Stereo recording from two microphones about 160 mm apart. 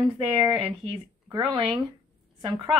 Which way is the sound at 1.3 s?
25° right (ahead or behind).